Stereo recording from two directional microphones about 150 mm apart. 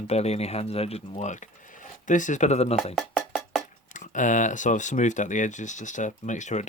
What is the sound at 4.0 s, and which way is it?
Speech, 55° left (ahead or behind).